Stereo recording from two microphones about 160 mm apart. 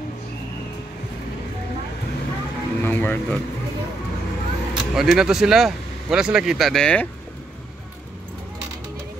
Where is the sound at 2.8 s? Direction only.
15° left (ahead or behind).